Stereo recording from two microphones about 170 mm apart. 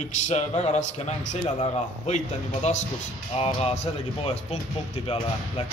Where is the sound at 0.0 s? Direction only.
45° left (ahead or behind).